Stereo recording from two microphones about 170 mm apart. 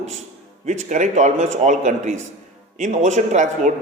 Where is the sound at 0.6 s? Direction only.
45° right (ahead or behind).